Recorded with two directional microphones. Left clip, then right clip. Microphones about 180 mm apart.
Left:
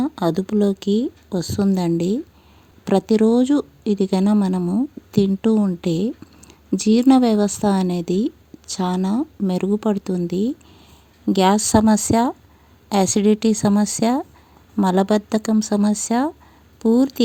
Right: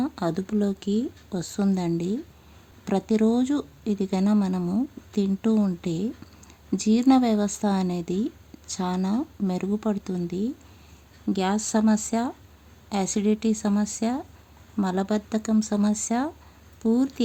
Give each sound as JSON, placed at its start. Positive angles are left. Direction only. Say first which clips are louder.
{"t": 0.0, "sound": "speech", "louder": "left 6 dB", "side_deg": 30}